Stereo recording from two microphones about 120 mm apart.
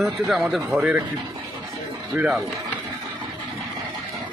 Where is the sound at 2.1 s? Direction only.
15° right (ahead or behind).